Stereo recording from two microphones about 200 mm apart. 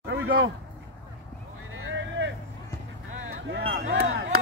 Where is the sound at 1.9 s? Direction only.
65° right (ahead or behind).